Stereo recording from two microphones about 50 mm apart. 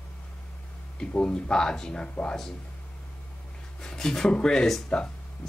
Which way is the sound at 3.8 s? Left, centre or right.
Centre.